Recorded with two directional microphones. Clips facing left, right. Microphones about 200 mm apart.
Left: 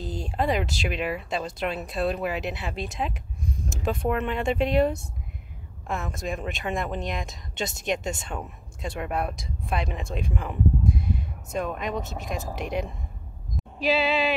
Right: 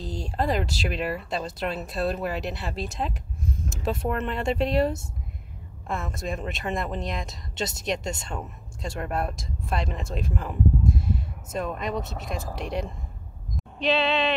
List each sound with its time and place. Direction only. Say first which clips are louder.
0.0 s a woman's voice: left 1 dB; centre (ahead or behind)